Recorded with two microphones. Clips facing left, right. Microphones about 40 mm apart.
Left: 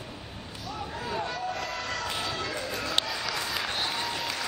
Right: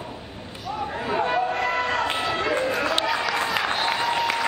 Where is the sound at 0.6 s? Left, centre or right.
Right.